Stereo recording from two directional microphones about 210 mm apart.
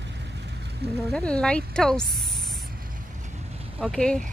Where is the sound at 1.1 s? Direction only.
5° left (ahead or behind).